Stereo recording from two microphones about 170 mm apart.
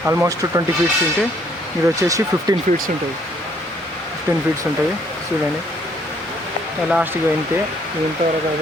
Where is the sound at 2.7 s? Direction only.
45° right (ahead or behind).